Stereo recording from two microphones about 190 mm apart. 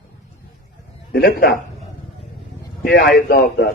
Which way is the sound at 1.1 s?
55° left (ahead or behind).